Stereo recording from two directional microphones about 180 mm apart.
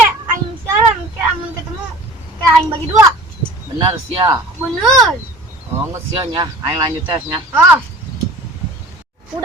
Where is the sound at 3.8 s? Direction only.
25° right (ahead or behind).